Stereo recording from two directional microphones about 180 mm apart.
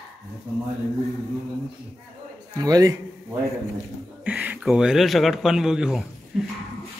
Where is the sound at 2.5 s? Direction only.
20° right (ahead or behind).